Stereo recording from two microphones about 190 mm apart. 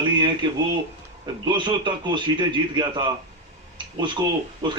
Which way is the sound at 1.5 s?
25° right (ahead or behind).